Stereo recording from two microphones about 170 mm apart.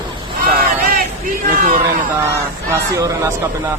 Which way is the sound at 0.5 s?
60° right (ahead or behind).